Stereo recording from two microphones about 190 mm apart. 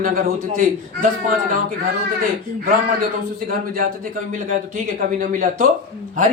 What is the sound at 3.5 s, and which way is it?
Speech, 50° right (ahead or behind).